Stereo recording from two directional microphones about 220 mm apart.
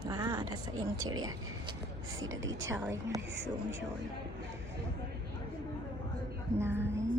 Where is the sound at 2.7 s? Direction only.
15° right (ahead or behind).